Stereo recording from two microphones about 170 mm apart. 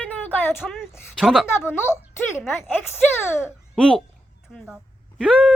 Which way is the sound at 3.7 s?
5° left (ahead or behind).